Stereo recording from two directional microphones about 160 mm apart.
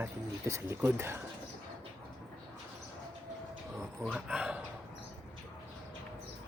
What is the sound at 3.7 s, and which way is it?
Speech, 5° right (ahead or behind).